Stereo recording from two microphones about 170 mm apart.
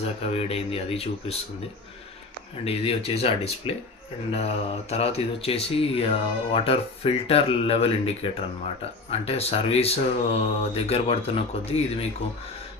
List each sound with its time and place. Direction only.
0.0 s speech: 40° left (ahead or behind)
2.6 s speech: 35° left (ahead or behind)